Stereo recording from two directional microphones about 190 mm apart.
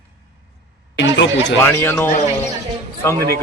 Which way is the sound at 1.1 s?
70° left (ahead or behind).